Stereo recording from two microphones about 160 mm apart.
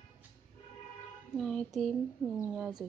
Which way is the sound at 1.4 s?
5° left (ahead or behind).